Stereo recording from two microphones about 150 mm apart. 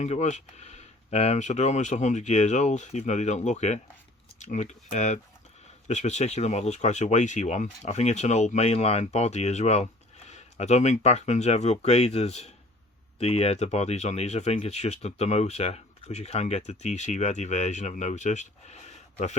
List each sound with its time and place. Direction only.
0.0 s speech: 50° left (ahead or behind)